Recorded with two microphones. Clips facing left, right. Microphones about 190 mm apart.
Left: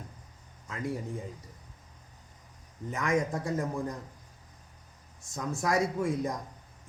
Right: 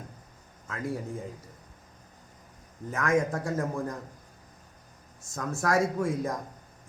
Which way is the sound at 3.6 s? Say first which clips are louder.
Right 2 dB; 15° left (ahead or behind).